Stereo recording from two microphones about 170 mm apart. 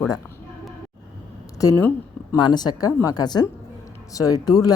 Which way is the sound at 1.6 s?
15° left (ahead or behind).